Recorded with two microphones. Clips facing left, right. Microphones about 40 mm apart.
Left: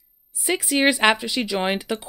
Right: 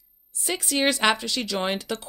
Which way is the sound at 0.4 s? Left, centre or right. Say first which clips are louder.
Left 4 dB; centre.